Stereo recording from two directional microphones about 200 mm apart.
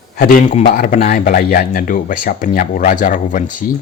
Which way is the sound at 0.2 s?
45° left (ahead or behind).